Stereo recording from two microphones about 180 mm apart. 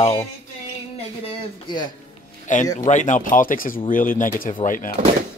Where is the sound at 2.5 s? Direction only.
45° left (ahead or behind).